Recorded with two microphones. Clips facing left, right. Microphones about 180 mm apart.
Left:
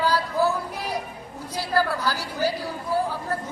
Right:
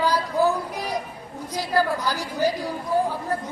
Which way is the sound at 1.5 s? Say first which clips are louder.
Right 1 dB; 15° right (ahead or behind).